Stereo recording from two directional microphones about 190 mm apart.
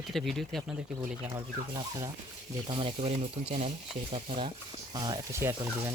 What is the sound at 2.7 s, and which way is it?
Speech, 25° right (ahead or behind).